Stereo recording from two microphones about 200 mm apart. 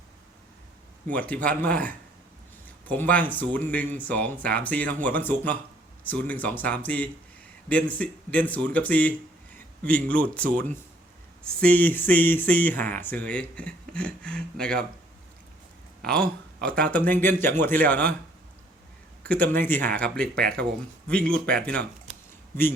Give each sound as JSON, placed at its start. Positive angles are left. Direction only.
{"t": 1.1, "sound": "speech", "side_deg": 5}
{"t": 16.0, "sound": "speech", "side_deg": 5}
{"t": 19.2, "sound": "speech", "side_deg": 5}